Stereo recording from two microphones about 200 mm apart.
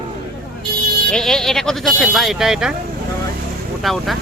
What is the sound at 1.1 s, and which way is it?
Speech, 5° left (ahead or behind).